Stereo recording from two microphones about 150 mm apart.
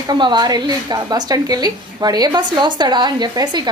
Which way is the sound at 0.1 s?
30° right (ahead or behind).